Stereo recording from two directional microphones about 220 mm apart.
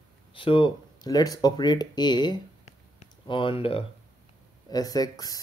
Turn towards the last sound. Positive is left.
turn(degrees=15)  # may be behind; listen again after turning